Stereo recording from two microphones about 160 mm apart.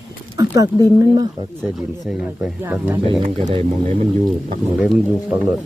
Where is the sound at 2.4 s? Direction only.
10° right (ahead or behind).